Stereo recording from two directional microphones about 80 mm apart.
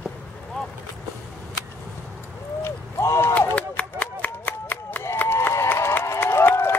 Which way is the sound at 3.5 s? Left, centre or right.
Centre.